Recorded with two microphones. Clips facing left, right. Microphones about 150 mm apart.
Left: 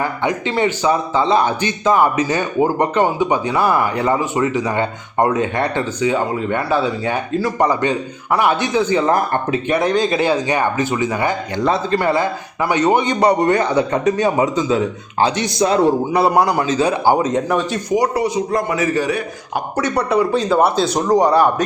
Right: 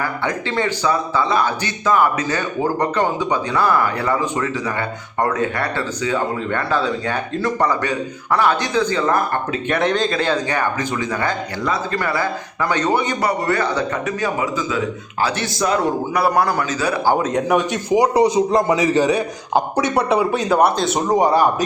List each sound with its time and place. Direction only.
0.0 s speech: 15° left (ahead or behind)
9.6 s speech: 5° left (ahead or behind)
11.6 s a man's voice: 30° left (ahead or behind)
16.9 s speech: 10° left (ahead or behind)
18.0 s a man's voice: 20° right (ahead or behind); by 21.2 s centre (ahead or behind)